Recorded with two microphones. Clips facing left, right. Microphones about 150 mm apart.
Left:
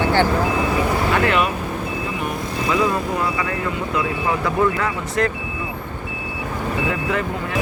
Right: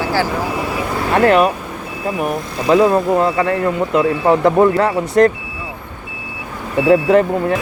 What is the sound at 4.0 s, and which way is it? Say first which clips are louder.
Speech: right 10 dB; 45° right (ahead or behind).